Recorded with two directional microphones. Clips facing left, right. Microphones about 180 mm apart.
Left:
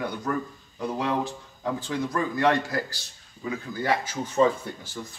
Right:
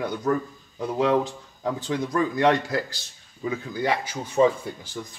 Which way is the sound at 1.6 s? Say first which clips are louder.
Right 2 dB; 20° right (ahead or behind).